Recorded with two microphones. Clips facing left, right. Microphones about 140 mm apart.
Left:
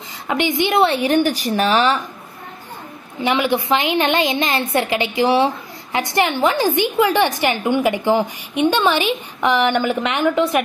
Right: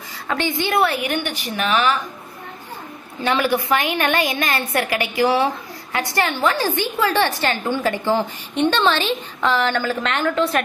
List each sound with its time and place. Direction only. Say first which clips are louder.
0.3 s a woman's voice: left 3 dB; 20° left (ahead or behind)
3.2 s a woman's voice: left 1 dB; 20° left (ahead or behind)